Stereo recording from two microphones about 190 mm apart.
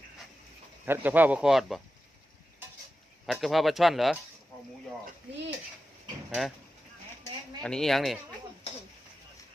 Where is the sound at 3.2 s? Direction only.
Centre (ahead or behind).